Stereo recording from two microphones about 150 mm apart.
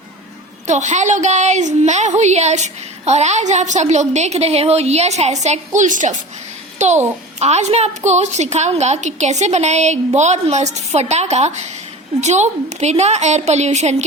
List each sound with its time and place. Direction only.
0.7 s a child's voice: 50° right (ahead or behind)